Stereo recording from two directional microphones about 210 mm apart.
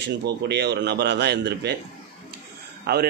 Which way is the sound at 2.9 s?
50° right (ahead or behind).